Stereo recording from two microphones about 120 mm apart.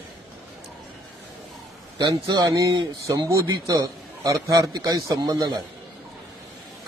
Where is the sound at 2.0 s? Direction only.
35° right (ahead or behind).